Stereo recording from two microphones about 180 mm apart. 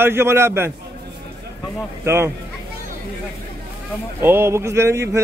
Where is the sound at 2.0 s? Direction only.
15° right (ahead or behind).